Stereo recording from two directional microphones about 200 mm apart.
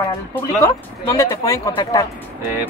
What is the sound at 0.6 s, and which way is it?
Speech, 15° left (ahead or behind).